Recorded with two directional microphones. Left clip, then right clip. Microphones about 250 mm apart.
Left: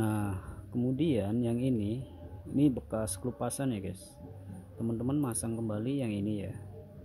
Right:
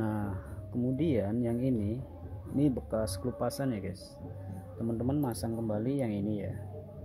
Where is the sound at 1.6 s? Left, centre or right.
Centre.